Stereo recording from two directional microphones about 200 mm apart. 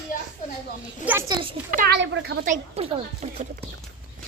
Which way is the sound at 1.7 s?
50° right (ahead or behind).